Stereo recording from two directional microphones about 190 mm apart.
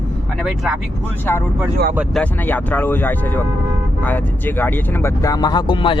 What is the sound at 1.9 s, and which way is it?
Speech, 5° right (ahead or behind).